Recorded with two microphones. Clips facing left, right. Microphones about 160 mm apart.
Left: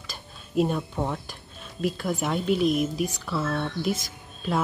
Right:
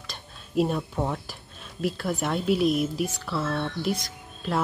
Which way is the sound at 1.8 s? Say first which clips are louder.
Left 1 dB; centre (ahead or behind).